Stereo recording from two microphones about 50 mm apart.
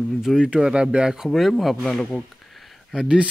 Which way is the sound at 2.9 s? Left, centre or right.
Centre.